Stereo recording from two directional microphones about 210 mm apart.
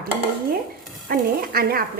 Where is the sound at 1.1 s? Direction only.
45° right (ahead or behind).